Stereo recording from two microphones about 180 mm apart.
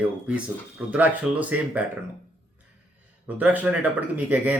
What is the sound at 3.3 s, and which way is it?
Speech, 10° right (ahead or behind).